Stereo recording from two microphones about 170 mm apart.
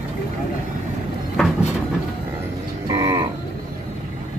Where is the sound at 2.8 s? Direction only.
20° right (ahead or behind).